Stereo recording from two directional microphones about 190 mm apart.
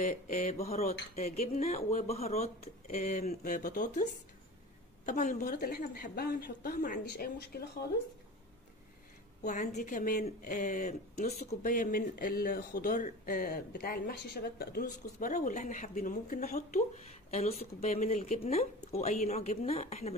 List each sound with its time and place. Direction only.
0.0 s speech: 40° left (ahead or behind)
5.5 s speech: 55° left (ahead or behind)
9.4 s speech: 40° left (ahead or behind)